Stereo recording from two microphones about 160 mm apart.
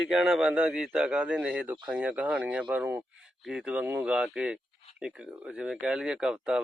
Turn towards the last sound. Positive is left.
turn(degrees=-5)  # may be behind; listen again after turning